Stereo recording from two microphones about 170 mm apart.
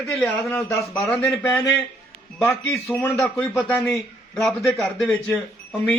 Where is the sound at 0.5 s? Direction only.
15° left (ahead or behind).